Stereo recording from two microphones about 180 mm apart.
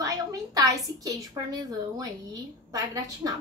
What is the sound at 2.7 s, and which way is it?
Speech, 20° right (ahead or behind).